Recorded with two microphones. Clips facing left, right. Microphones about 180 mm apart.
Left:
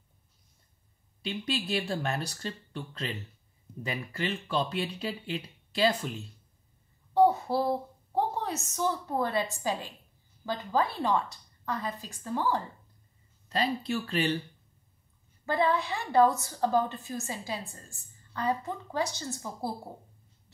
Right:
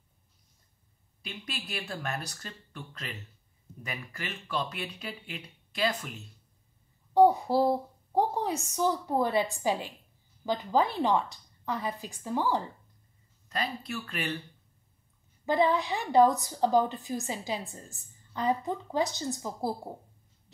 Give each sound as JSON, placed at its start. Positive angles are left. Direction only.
{"t": 1.2, "sound": "speech", "side_deg": 30}
{"t": 7.2, "sound": "a woman's voice", "side_deg": -15}
{"t": 13.5, "sound": "speech", "side_deg": 30}
{"t": 15.4, "sound": "a woman's voice", "side_deg": -15}